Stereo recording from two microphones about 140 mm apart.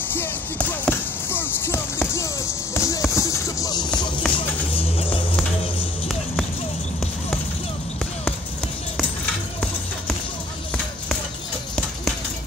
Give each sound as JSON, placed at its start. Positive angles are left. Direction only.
{"t": 0.1, "sound": "basketball bounce", "side_deg": 15}
{"t": 4.4, "sound": "music", "side_deg": 40}